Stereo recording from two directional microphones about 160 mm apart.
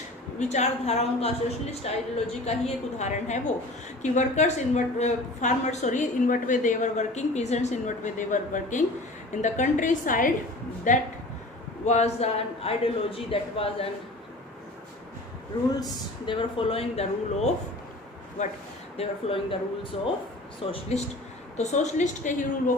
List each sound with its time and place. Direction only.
0.3 s a woman's voice: 45° left (ahead or behind)
11.9 s speech: 40° left (ahead or behind)
15.7 s a woman's voice: 25° left (ahead or behind); by 18.5 s 45° left (ahead or behind)
18.9 s speech: 35° left (ahead or behind)
21.6 s a woman's voice: 45° left (ahead or behind)